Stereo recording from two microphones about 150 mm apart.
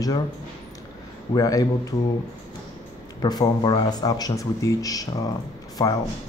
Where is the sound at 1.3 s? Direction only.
25° left (ahead or behind).